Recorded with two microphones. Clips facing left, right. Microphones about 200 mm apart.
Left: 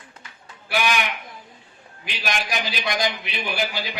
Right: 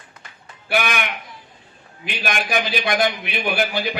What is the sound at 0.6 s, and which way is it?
Speech, 55° right (ahead or behind).